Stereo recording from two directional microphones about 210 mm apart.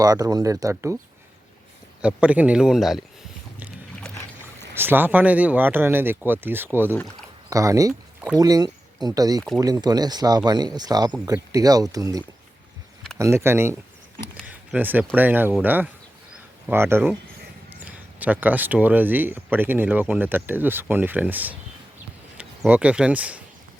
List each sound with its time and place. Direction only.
0.0 s speech: 15° right (ahead or behind)
2.0 s a man's voice: 5° right (ahead or behind)
4.7 s speech: 10° right (ahead or behind)
6.9 s a man's voice: 5° left (ahead or behind)
7.5 s speech: 15° right (ahead or behind)
14.4 s a sound: 5° right (ahead or behind)
15.1 s speech: 10° right (ahead or behind)